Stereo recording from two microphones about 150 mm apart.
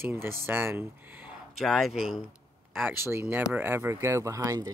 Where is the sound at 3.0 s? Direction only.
15° right (ahead or behind).